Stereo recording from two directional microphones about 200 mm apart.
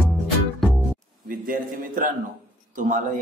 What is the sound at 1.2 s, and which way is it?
A man's voice, 45° right (ahead or behind).